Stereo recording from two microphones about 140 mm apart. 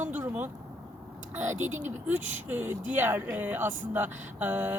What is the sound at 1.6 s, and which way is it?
Speech, 60° right (ahead or behind).